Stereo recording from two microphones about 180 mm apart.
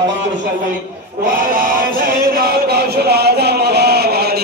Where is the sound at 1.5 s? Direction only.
50° right (ahead or behind).